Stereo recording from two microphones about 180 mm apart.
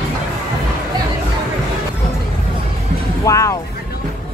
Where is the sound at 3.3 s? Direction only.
15° left (ahead or behind).